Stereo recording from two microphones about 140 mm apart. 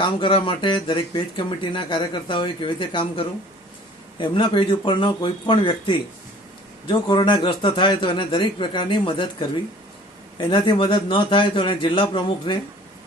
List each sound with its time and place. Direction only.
0.0 s speech: 35° left (ahead or behind)